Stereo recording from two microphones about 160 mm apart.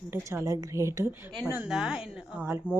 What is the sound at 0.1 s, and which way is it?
A woman's voice, 15° right (ahead or behind).